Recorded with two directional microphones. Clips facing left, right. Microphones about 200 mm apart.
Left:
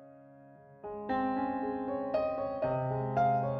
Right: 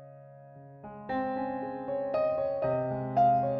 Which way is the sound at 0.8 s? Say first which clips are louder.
Even; centre (ahead or behind).